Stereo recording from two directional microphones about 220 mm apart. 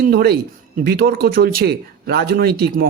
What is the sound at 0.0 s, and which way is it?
Speech, 45° right (ahead or behind).